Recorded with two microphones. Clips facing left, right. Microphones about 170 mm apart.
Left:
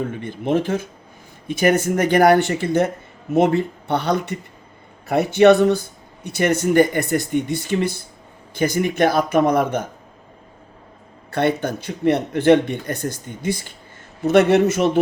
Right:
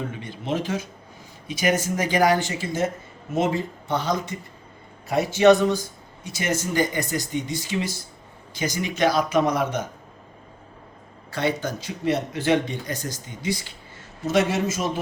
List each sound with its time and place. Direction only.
0.1 s speech: 55° left (ahead or behind)
11.3 s speech: 60° left (ahead or behind)